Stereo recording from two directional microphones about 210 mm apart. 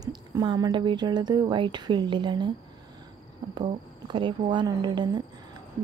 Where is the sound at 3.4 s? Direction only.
20° right (ahead or behind).